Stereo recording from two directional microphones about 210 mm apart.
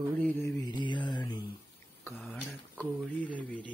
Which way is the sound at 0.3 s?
15° left (ahead or behind).